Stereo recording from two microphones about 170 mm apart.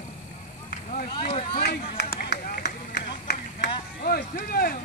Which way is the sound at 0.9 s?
55° left (ahead or behind).